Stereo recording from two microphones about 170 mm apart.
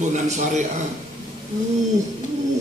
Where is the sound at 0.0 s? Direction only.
45° right (ahead or behind).